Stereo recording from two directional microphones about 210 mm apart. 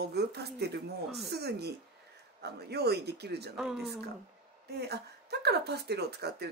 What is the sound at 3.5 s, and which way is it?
Speech, centre (ahead or behind).